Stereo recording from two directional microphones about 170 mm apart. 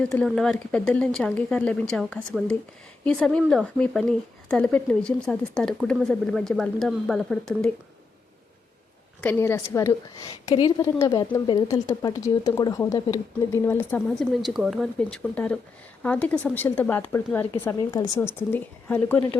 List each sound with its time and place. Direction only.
0.2 s speech: 5° left (ahead or behind)
9.2 s speech: 15° left (ahead or behind)
10.4 s a woman's voice: 25° left (ahead or behind); by 19.2 s 10° left (ahead or behind)